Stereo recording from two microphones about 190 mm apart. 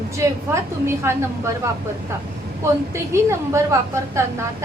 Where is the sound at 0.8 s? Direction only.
15° right (ahead or behind).